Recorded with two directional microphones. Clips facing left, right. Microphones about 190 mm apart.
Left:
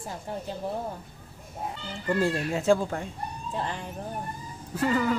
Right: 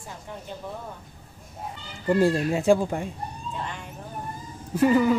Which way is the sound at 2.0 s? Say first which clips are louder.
Right 5 dB; 15° right (ahead or behind).